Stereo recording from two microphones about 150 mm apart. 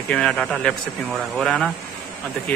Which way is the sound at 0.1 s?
5° left (ahead or behind).